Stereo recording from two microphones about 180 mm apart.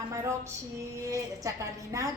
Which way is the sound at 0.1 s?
15° right (ahead or behind).